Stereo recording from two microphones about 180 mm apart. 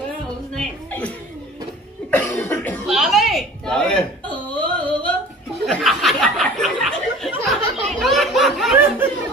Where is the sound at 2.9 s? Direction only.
Centre (ahead or behind).